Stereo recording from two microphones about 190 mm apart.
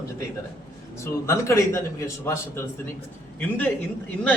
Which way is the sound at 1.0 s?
15° left (ahead or behind).